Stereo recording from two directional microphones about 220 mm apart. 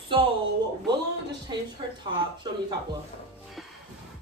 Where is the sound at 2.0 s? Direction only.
20° right (ahead or behind).